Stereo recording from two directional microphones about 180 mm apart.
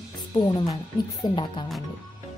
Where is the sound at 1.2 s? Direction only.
25° left (ahead or behind).